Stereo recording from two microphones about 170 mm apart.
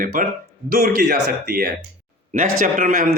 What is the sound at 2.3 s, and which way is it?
Speech, 50° right (ahead or behind).